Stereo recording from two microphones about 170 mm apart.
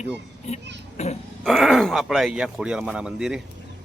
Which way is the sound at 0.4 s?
40° left (ahead or behind).